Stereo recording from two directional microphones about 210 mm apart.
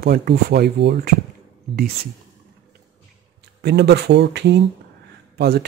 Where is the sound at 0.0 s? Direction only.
50° right (ahead or behind).